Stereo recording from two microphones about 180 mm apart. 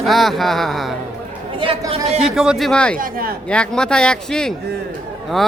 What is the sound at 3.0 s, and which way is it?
Speech, 55° right (ahead or behind).